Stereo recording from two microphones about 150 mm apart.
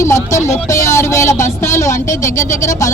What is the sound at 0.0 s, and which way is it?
Speech, 20° left (ahead or behind).